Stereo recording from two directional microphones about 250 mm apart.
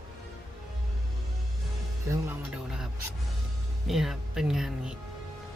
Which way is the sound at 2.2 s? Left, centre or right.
Centre.